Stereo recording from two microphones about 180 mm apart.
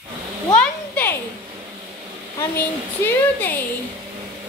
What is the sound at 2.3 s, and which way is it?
A woman's voice, 10° left (ahead or behind).